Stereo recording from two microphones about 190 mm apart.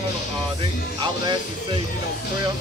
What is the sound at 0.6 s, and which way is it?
Speech, 25° right (ahead or behind).